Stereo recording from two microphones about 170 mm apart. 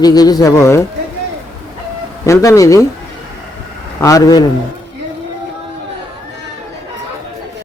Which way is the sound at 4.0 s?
20° left (ahead or behind).